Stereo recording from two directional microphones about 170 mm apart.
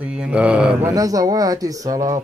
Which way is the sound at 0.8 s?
20° right (ahead or behind).